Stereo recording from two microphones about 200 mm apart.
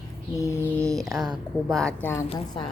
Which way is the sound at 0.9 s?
Centre (ahead or behind).